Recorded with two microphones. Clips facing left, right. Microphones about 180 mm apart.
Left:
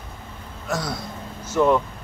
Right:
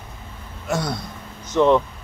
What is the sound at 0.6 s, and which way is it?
Speech, centre (ahead or behind).